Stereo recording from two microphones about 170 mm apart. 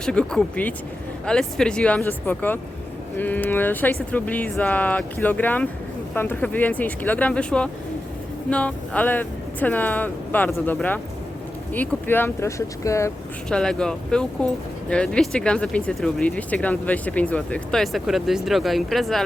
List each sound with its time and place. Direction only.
0.0 s speech: 5° left (ahead or behind)
13.5 s speech: 5° left (ahead or behind)